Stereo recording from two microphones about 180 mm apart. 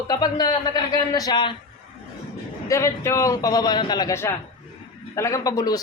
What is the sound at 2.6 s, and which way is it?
A man's voice, 15° left (ahead or behind).